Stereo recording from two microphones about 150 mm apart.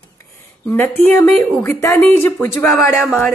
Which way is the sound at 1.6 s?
15° left (ahead or behind).